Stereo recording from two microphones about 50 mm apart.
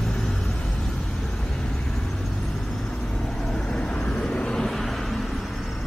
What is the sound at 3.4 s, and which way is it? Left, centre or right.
Vehicle, centre.